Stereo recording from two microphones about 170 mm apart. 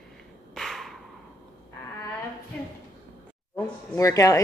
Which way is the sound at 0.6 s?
Centre (ahead or behind).